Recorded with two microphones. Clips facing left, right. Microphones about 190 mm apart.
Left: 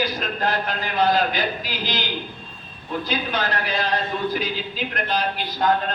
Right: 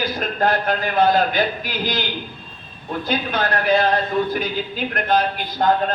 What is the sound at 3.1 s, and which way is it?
A man's voice, 55° right (ahead or behind).